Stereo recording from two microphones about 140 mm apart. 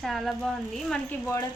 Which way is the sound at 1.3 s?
25° left (ahead or behind).